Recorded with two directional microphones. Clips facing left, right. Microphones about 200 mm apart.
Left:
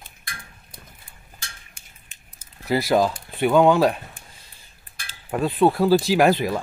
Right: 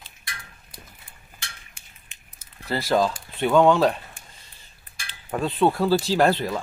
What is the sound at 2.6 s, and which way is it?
Speech, 10° left (ahead or behind).